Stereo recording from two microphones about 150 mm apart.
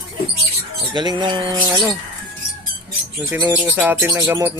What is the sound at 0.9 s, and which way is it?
Speech, 30° right (ahead or behind).